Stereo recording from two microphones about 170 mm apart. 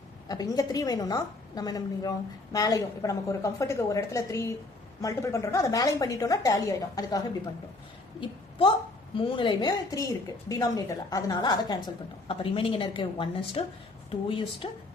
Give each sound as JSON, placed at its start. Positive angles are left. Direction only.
{"t": 0.3, "sound": "a woman's voice", "side_deg": 20}
{"t": 8.2, "sound": "a woman's voice", "side_deg": 30}